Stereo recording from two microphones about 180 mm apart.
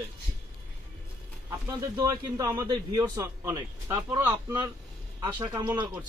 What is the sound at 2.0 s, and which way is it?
A man's voice, 20° right (ahead or behind).